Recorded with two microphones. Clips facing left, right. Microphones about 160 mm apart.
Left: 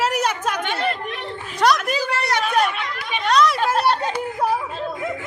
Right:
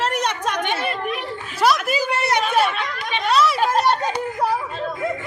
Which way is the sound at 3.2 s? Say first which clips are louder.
Left 1 dB; 5° right (ahead or behind).